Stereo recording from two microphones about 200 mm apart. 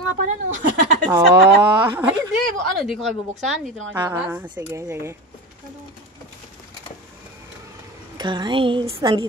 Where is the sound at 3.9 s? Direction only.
15° right (ahead or behind).